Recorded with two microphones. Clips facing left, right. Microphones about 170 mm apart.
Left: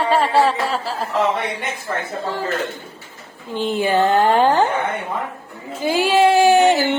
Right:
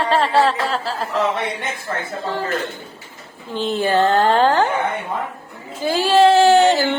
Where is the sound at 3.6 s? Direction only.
15° left (ahead or behind).